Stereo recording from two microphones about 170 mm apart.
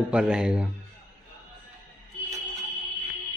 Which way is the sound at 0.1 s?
5° right (ahead or behind).